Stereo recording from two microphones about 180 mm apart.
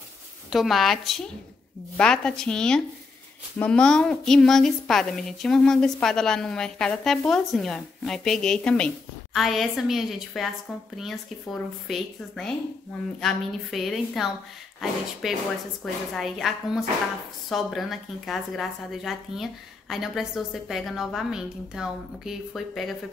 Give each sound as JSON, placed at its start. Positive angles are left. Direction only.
{"t": 0.5, "sound": "a woman's voice", "side_deg": 0}